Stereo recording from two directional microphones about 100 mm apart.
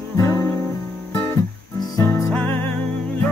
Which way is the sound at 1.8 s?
35° left (ahead or behind).